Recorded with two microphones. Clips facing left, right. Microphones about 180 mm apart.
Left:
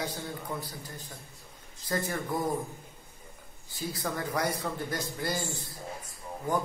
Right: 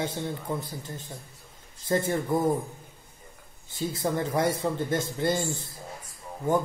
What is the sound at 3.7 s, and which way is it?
A man's voice, 25° right (ahead or behind).